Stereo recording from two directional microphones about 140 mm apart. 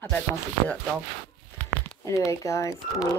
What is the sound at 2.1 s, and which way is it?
Speech, 20° left (ahead or behind).